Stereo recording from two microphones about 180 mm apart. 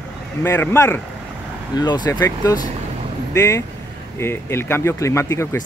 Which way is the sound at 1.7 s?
25° left (ahead or behind).